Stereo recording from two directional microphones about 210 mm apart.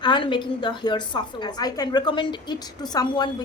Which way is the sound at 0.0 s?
20° left (ahead or behind).